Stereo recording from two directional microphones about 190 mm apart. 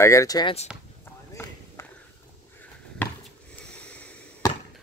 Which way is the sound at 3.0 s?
10° left (ahead or behind).